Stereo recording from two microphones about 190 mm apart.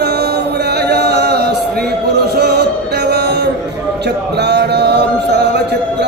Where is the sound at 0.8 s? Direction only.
60° right (ahead or behind).